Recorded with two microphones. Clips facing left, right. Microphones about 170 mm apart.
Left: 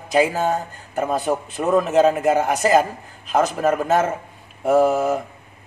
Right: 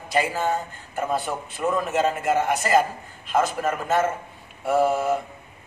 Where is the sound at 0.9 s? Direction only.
40° left (ahead or behind).